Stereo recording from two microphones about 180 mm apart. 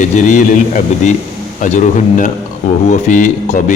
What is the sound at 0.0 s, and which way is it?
Speech, 45° left (ahead or behind).